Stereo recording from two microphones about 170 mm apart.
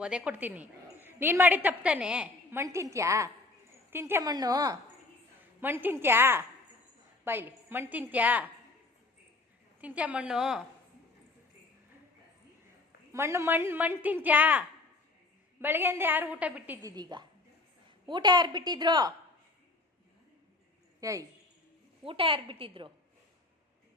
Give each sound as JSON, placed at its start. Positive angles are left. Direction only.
{"t": 0.0, "sound": "a woman's voice", "side_deg": -5}
{"t": 9.8, "sound": "a woman's voice", "side_deg": -10}
{"t": 13.1, "sound": "a woman's voice", "side_deg": -15}
{"t": 15.6, "sound": "a woman's voice", "side_deg": -10}
{"t": 16.8, "sound": "a woman's voice", "side_deg": -25}
{"t": 21.0, "sound": "a woman's voice", "side_deg": -20}
{"t": 22.0, "sound": "a woman's voice", "side_deg": -30}